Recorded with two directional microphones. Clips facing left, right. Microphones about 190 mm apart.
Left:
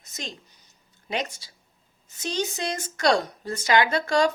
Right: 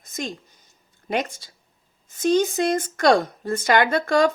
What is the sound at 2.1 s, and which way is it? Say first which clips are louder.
Speech: right 10 dB; 50° right (ahead or behind).